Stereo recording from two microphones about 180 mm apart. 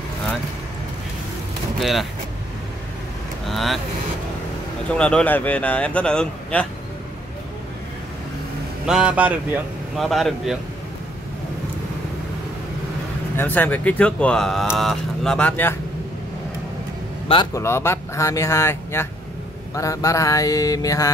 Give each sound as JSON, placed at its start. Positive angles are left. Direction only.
{"t": 1.8, "sound": "speech", "side_deg": 0}
{"t": 3.4, "sound": "speech", "side_deg": 0}
{"t": 4.9, "sound": "speech", "side_deg": 5}
{"t": 8.8, "sound": "a man's voice", "side_deg": -5}
{"t": 13.4, "sound": "speech", "side_deg": 10}
{"t": 17.6, "sound": "speech", "side_deg": 15}
{"t": 19.7, "sound": "mantra", "side_deg": 15}